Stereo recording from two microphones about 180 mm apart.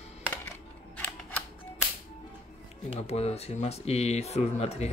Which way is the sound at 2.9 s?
35° left (ahead or behind).